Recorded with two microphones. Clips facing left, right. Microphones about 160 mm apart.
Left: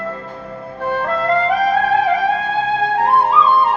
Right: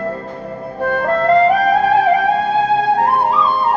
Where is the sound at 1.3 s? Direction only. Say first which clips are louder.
Right 4 dB; 40° right (ahead or behind).